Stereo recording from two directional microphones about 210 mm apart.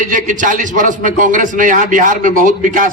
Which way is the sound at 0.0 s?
40° right (ahead or behind).